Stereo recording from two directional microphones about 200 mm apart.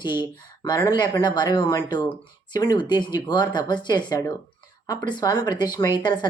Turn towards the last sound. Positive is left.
turn(degrees=20)  # may be behind; listen again after turning